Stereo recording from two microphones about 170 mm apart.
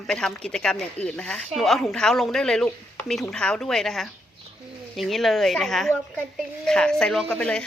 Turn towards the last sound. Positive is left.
turn(degrees=5)  # may be behind; listen again after turning